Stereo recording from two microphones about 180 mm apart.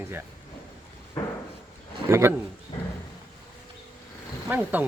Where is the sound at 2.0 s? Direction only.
15° right (ahead or behind).